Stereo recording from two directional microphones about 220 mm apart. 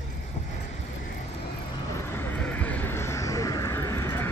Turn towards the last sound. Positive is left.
turn(degrees=10)  # may be behind; listen again after turning